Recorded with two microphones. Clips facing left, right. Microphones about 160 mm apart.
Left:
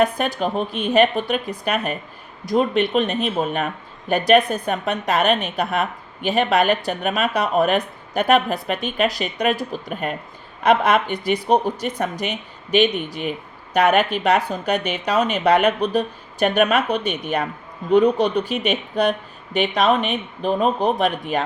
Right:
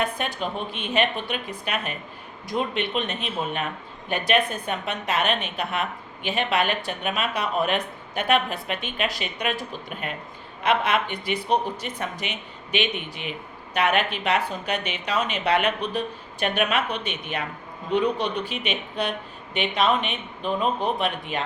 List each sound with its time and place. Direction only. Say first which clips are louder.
0.0 s speech: left 7 dB; 40° left (ahead or behind)